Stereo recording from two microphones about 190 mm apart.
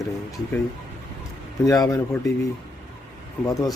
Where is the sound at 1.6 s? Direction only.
20° left (ahead or behind).